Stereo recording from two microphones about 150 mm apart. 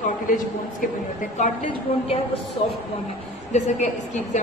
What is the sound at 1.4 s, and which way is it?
Speech, 55° left (ahead or behind).